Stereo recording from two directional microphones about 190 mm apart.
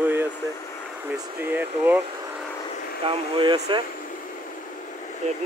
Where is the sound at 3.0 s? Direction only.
25° right (ahead or behind).